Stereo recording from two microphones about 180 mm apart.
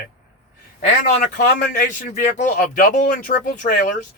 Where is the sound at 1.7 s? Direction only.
45° left (ahead or behind).